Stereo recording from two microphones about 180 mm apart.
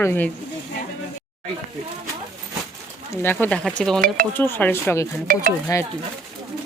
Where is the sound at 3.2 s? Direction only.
10° left (ahead or behind).